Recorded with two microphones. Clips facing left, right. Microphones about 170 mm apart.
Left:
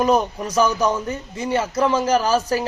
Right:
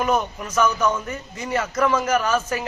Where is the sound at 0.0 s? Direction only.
35° left (ahead or behind).